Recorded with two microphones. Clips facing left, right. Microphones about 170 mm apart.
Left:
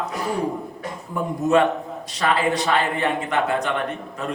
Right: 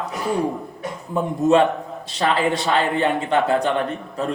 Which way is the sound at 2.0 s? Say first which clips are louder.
Right 1 dB; 30° right (ahead or behind).